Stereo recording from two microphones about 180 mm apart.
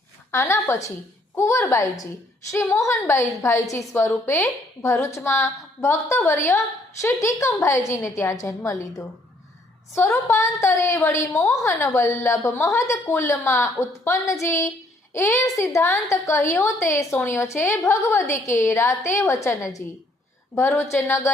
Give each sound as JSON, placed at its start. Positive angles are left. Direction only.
{"t": 0.3, "sound": "a woman's voice", "side_deg": 15}